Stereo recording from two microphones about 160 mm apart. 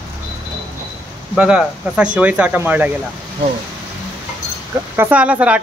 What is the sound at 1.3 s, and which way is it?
Speech, 5° right (ahead or behind).